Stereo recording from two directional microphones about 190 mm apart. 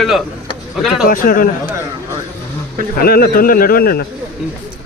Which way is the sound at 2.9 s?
55° left (ahead or behind).